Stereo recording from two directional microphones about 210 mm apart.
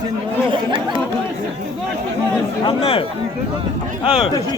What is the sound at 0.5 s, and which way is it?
Chatter, 25° right (ahead or behind).